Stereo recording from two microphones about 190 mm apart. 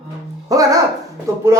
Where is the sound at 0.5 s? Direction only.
20° right (ahead or behind).